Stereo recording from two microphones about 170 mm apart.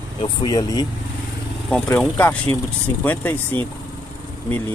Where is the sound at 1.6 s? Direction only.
10° left (ahead or behind).